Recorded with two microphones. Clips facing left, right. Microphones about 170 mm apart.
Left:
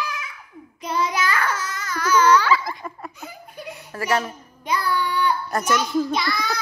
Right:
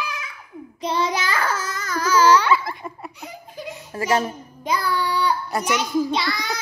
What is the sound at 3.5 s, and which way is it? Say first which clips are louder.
Baby laughter: right 4 dB; 90° right.